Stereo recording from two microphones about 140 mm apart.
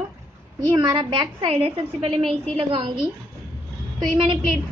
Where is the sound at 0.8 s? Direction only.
35° right (ahead or behind).